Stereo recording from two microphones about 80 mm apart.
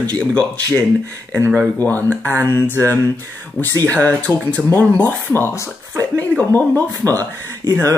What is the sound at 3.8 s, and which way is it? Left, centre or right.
Speech, centre.